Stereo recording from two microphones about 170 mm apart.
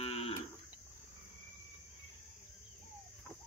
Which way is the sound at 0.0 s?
35° left (ahead or behind).